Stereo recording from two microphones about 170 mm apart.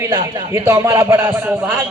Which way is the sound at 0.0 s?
20° right (ahead or behind).